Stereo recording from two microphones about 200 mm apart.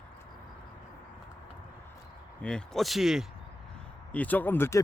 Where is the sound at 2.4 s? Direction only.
5° left (ahead or behind).